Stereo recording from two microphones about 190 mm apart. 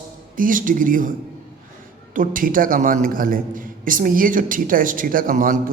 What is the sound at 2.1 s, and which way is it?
A man's voice, 45° right (ahead or behind).